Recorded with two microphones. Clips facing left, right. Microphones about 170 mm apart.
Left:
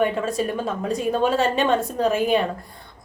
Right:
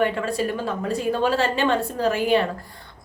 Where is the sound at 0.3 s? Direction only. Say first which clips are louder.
Even; 20° left (ahead or behind).